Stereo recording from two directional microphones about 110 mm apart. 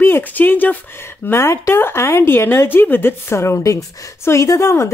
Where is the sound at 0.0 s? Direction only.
20° left (ahead or behind).